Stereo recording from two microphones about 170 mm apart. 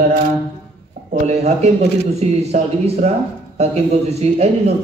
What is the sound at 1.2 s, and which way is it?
A man's voice, 40° right (ahead or behind).